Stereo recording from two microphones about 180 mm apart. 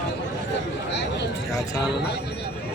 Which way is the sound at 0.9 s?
75° left (ahead or behind).